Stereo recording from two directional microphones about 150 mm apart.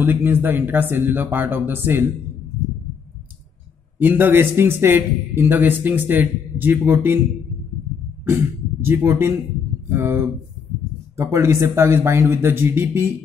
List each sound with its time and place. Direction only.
0.0 s a man's voice: 15° right (ahead or behind)
4.0 s a man's voice: 10° right (ahead or behind)
8.8 s a man's voice: 15° right (ahead or behind)